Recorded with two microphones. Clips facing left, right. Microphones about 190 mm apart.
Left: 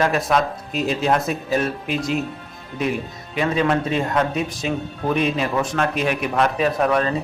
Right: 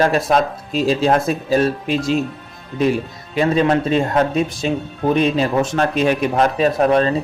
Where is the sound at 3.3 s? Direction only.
30° right (ahead or behind).